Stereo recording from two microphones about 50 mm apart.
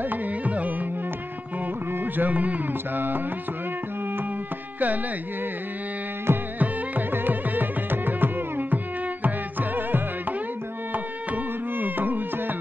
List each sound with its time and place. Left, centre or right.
0.0 s carnatic music: right
2.1 s carnatic music: right
4.7 s carnatic music: right
6.3 s carnatic music: right
6.6 s music: right